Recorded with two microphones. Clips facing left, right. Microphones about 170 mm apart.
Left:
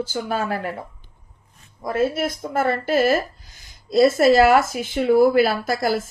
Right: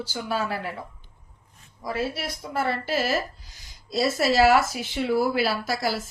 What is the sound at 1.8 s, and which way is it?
Speech, 50° left (ahead or behind).